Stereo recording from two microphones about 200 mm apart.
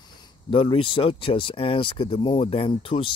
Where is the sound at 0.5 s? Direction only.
25° left (ahead or behind).